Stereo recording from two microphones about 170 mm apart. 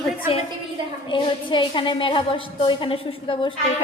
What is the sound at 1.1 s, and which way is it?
A woman's voice, 30° left (ahead or behind).